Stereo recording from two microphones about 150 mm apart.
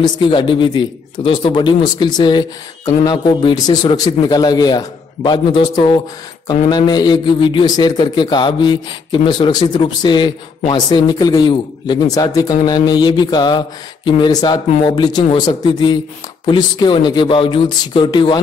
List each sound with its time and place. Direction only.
0.0 s a man's voice: 35° left (ahead or behind)